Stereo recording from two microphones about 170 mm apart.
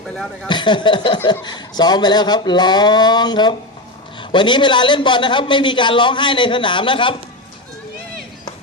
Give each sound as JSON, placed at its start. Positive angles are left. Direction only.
{"t": 0.4, "sound": "a man's voice", "side_deg": 25}